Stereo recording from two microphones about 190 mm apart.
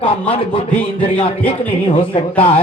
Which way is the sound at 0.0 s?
30° left (ahead or behind).